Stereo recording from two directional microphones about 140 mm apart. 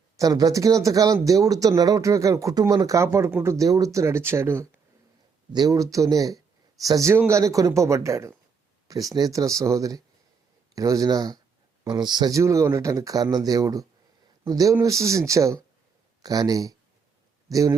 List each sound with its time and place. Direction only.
0.2 s speech: 25° right (ahead or behind)